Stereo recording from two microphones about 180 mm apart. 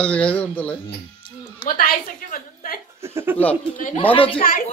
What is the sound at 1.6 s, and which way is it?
Speech, 55° left (ahead or behind).